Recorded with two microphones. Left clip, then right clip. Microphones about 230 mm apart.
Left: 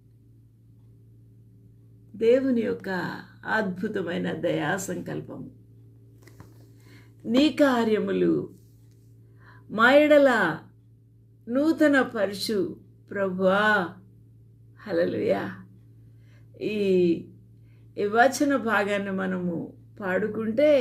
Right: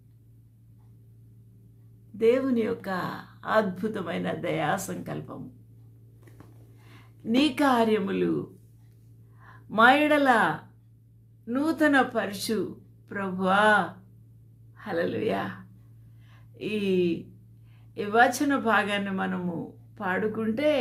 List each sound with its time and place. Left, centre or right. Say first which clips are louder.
2.1 s speech: left 2 dB; centre
7.3 s speech: left 2 dB; centre
9.4 s speech: right 1 dB; centre
16.6 s speech: left 3 dB; centre